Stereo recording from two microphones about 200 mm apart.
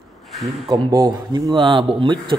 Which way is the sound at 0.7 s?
20° right (ahead or behind).